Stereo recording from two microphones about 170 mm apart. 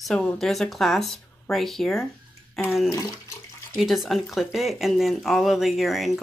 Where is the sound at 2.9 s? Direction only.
20° left (ahead or behind).